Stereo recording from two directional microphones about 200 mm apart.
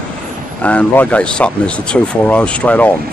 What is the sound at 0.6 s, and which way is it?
Speech, 5° left (ahead or behind).